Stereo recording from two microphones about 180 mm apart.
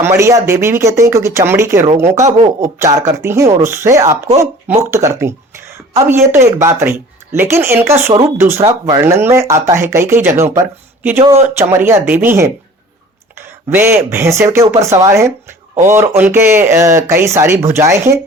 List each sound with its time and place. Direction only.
0.0 s speech: 15° right (ahead or behind)
2.1 s speech: 40° right (ahead or behind)
2.6 s speech: 15° right (ahead or behind)
13.7 s speech: 15° right (ahead or behind)
15.7 s speech: 40° right (ahead or behind)
16.0 s speech: 15° right (ahead or behind)